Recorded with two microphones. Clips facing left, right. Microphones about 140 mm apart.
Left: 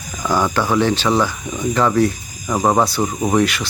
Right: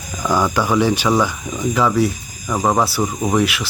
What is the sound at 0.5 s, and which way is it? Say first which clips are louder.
Speech: even; 10° right (ahead or behind).